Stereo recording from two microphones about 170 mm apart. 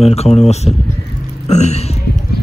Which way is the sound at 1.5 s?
40° left (ahead or behind).